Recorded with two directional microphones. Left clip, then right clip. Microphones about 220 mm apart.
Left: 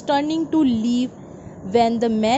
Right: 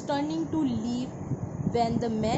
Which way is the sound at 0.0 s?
35° left (ahead or behind).